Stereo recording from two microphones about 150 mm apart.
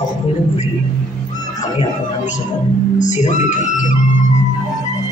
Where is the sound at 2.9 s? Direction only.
55° left (ahead or behind).